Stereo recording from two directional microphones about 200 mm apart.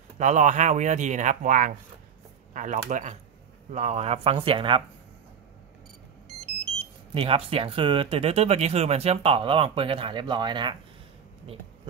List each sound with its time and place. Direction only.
0.2 s speech: 35° right (ahead or behind)
7.2 s speech: 25° right (ahead or behind)